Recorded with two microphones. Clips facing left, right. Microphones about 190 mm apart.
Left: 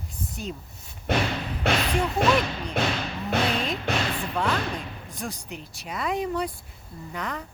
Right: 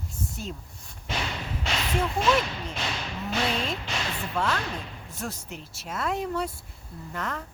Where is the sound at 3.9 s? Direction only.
60° left (ahead or behind).